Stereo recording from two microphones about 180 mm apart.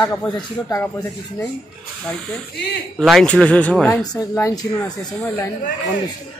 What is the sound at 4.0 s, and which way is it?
Speech, 20° left (ahead or behind).